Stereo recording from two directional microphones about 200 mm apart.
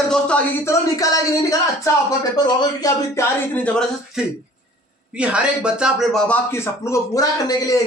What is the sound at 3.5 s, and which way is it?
Speech, 5° left (ahead or behind).